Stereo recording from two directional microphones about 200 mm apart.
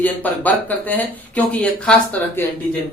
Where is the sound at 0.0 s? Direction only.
10° left (ahead or behind).